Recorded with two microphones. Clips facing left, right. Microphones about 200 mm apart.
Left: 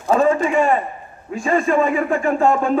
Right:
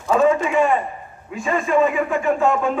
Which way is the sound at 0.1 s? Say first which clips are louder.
Left 1 dB; 35° left (ahead or behind).